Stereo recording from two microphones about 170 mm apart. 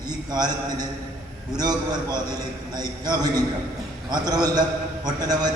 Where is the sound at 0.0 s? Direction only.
25° right (ahead or behind).